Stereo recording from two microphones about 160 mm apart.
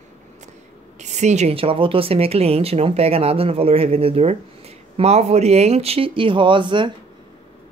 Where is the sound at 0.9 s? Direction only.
45° right (ahead or behind); by 6.9 s 30° right (ahead or behind).